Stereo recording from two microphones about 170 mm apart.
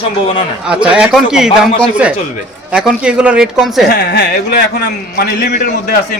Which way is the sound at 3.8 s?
75° left (ahead or behind).